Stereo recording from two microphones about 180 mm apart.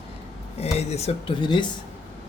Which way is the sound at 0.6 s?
35° left (ahead or behind).